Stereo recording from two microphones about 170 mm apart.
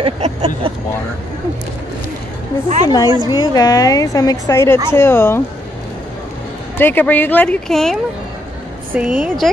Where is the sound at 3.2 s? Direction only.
20° left (ahead or behind).